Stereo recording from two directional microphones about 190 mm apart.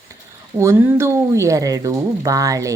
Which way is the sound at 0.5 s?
15° right (ahead or behind).